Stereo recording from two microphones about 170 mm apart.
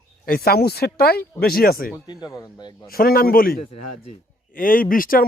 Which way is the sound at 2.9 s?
60° left (ahead or behind).